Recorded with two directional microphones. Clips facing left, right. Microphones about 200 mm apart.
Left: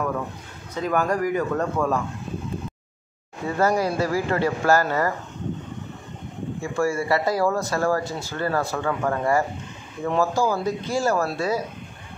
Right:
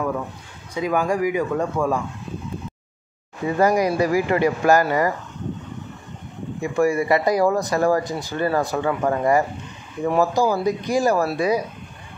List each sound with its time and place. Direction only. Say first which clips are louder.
0.7 s speech: right 2 dB; 10° right (ahead or behind)
3.4 s speech: right 3 dB; 15° right (ahead or behind)
6.6 s speech: right 5 dB; 15° right (ahead or behind)